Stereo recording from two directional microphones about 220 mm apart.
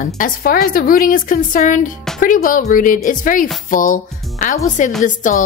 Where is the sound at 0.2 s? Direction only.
40° left (ahead or behind).